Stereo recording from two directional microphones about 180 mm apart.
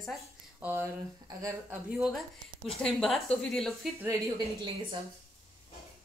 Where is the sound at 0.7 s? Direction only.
15° right (ahead or behind).